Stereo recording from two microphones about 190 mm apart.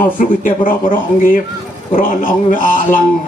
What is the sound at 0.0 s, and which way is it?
A man's voice, 45° left (ahead or behind).